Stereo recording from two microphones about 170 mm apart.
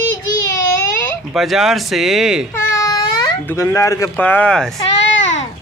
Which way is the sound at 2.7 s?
20° left (ahead or behind).